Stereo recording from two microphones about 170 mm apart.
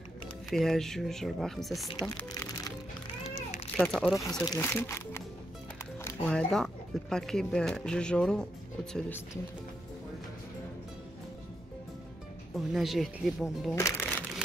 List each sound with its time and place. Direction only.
0.5 s speech: centre (ahead or behind)
1.9 s speech: 25° left (ahead or behind)
3.7 s speech: 5° left (ahead or behind)
4.4 s speech: 15° left (ahead or behind)
12.5 s speech: centre (ahead or behind)
13.7 s speech: 15° left (ahead or behind)